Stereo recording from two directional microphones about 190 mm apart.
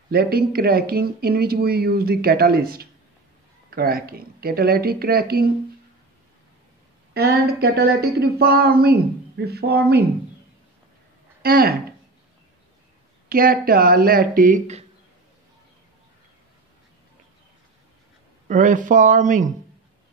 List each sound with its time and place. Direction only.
0.1 s speech: 55° right (ahead or behind)
7.2 s speech: 55° right (ahead or behind)
11.4 s speech: 55° right (ahead or behind)
13.3 s speech: 50° right (ahead or behind)
18.5 s speech: 40° right (ahead or behind)